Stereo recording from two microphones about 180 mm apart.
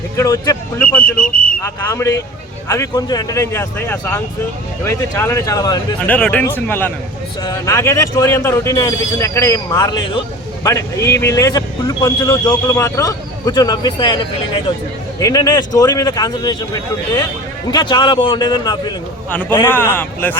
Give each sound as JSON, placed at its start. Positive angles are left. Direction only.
{"t": 0.2, "sound": "speech", "side_deg": 15}
{"t": 0.8, "sound": "a sound", "side_deg": 10}
{"t": 2.6, "sound": "speech", "side_deg": 15}
{"t": 6.1, "sound": "a man's voice", "side_deg": 10}
{"t": 19.3, "sound": "speech", "side_deg": 10}